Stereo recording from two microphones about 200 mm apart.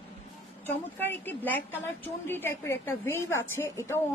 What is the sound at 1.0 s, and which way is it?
A woman's voice, 10° left (ahead or behind).